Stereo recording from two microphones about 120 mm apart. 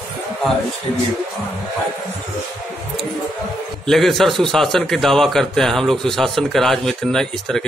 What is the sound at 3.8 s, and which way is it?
A man's voice, centre (ahead or behind).